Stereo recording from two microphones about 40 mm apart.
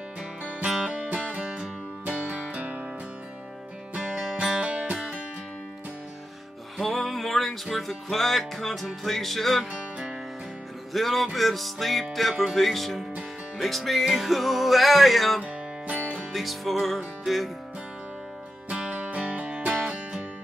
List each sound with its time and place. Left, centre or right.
0.8 s music: right
4.0 s music: centre
4.6 s music: right
6.8 s music: centre
10.9 s music: centre
15.4 s music: right
16.3 s music: centre
18.7 s music: right
18.9 s music: right